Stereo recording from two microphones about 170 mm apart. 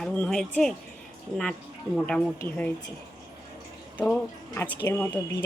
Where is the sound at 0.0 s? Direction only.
5° left (ahead or behind).